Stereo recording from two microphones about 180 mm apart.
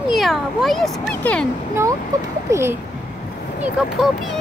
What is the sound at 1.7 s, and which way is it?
A child's voice, 15° right (ahead or behind).